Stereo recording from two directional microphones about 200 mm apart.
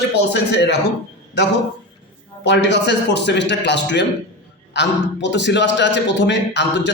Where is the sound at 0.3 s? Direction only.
55° left (ahead or behind).